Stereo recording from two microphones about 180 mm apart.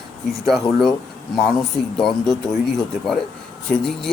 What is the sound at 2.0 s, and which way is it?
Speech, centre (ahead or behind).